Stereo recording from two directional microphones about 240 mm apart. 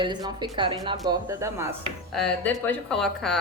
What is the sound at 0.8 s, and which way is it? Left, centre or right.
Cutlery, centre.